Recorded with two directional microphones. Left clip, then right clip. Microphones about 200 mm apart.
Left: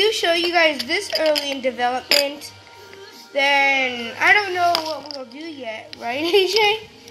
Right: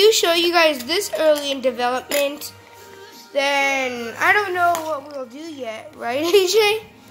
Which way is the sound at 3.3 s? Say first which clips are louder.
Left 2 dB; 5° right (ahead or behind).